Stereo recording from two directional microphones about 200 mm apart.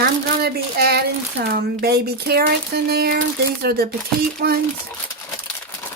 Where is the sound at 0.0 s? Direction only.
55° right (ahead or behind).